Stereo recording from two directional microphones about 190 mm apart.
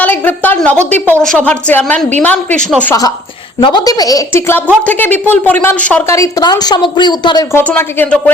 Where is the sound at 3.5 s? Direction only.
25° left (ahead or behind).